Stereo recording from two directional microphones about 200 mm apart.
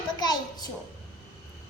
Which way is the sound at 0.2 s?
20° left (ahead or behind).